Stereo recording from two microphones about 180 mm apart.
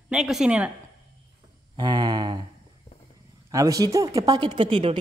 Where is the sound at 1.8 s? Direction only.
25° right (ahead or behind).